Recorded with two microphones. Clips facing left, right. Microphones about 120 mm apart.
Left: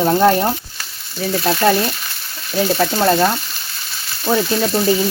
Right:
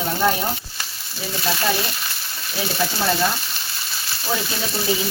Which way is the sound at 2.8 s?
50° left (ahead or behind).